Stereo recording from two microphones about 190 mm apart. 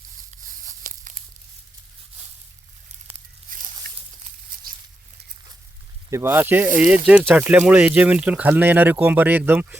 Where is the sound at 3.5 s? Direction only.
45° right (ahead or behind).